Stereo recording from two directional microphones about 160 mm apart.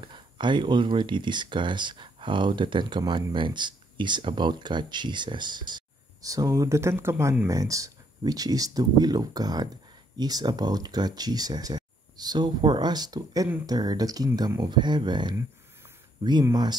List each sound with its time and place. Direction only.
0.0 s speech: 30° right (ahead or behind)